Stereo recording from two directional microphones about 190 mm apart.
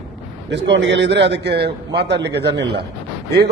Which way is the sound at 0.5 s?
70° right (ahead or behind).